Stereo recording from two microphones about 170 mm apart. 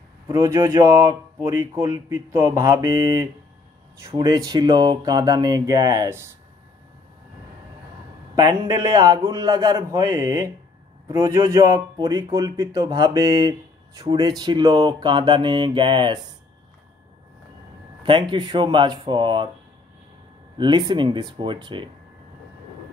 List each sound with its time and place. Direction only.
0.4 s speech: 15° right (ahead or behind)
8.4 s speech: 20° right (ahead or behind)
18.0 s speech: 30° right (ahead or behind)
20.5 s speech: 25° right (ahead or behind)